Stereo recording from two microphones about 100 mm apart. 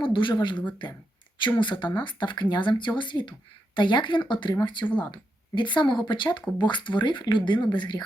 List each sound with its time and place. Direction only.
0.0 s speech: 55° left (ahead or behind)